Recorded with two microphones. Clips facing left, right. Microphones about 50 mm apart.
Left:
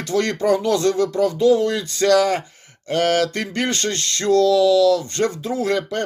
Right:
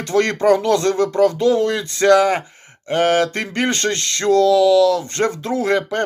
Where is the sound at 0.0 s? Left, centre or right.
Right.